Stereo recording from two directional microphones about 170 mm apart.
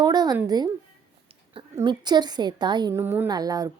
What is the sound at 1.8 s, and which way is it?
A woman's voice, 25° right (ahead or behind).